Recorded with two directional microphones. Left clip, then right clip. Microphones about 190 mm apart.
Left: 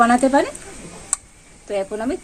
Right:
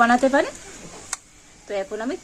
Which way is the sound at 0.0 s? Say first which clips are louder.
Left 2 dB; 5° right (ahead or behind).